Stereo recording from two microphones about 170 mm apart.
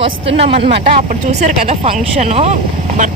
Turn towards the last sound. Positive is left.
turn(degrees=-45)  # may be behind; listen again after turning